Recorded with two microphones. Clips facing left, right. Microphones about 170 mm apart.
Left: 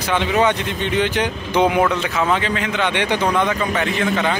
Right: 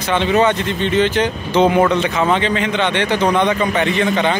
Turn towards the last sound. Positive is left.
turn(degrees=5)  # may be behind; listen again after turning